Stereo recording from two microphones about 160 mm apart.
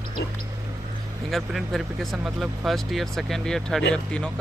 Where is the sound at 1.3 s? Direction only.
Centre (ahead or behind).